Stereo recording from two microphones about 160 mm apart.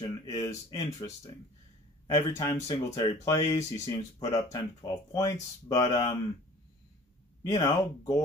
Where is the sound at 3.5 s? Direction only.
20° left (ahead or behind).